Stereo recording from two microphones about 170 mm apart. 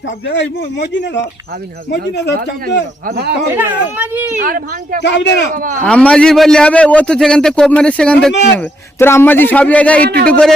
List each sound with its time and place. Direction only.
0.3 s speech: 90° left
3.1 s speech: 70° right (ahead or behind)
3.5 s a child's voice: 10° right (ahead or behind)
4.4 s speech: 55° right (ahead or behind)
5.0 s speech: 90° left
5.5 s speech: 55° right (ahead or behind)
5.8 s a man's voice: 10° left (ahead or behind)